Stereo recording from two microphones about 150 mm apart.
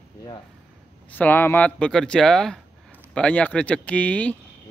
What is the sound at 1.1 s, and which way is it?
A man's voice, 10° left (ahead or behind).